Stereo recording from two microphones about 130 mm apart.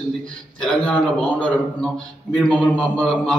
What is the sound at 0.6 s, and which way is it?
A man's voice, 10° left (ahead or behind).